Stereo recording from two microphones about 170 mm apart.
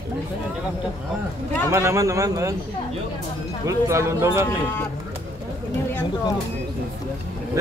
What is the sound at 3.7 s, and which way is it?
Speech, 15° right (ahead or behind).